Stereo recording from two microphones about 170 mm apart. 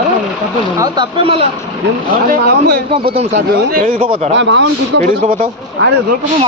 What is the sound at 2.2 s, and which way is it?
Speech, 55° right (ahead or behind).